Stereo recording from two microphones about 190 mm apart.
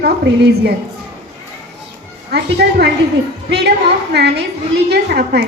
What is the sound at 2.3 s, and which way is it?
A woman's voice, 60° right (ahead or behind).